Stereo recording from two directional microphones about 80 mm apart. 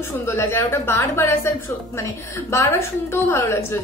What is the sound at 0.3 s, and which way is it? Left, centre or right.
A woman's voice, left.